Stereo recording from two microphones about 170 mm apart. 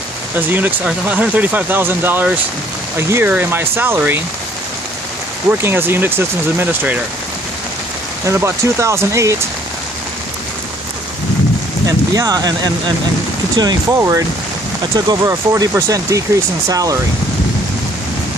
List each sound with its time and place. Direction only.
0.4 s speech: 10° right (ahead or behind)
5.5 s speech: 15° right (ahead or behind)
8.3 s speech: 15° right (ahead or behind)
12.1 s speech: 20° right (ahead or behind)